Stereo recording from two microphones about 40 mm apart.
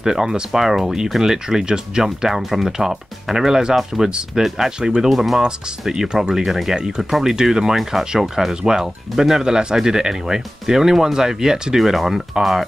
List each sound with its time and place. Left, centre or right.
0.0 s speech: centre
2.0 s speech: centre
5.1 s speech: centre
5.4 s speech: centre
7.3 s speech: centre
9.4 s speech: centre
11.8 s speech: centre